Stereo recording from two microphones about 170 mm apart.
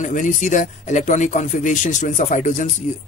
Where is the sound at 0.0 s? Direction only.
50° left (ahead or behind).